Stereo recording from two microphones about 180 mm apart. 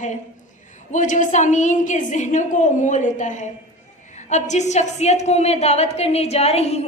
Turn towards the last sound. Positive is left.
turn(degrees=35)  # may be behind; listen again after turning